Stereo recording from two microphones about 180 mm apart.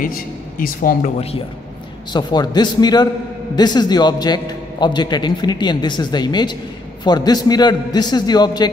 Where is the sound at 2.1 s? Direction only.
25° left (ahead or behind).